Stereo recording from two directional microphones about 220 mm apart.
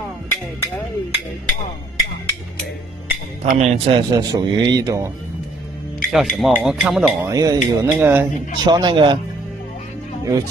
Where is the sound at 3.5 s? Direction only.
30° right (ahead or behind).